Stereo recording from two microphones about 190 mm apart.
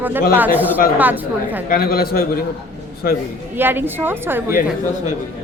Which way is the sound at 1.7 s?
55° left (ahead or behind).